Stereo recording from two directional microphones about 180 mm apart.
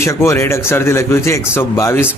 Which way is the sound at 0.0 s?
15° left (ahead or behind).